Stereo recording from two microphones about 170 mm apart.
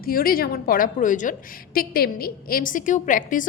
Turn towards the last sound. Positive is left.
turn(degrees=50)  # may be behind; listen again after turning